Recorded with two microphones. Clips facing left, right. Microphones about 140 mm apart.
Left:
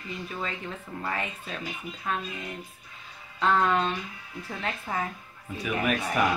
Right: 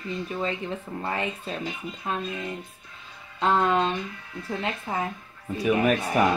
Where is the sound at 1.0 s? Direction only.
25° right (ahead or behind).